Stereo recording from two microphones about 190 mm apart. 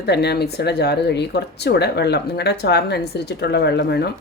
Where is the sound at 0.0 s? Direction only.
60° left (ahead or behind).